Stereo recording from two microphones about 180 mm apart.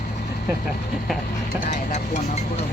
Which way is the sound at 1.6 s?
50° left (ahead or behind).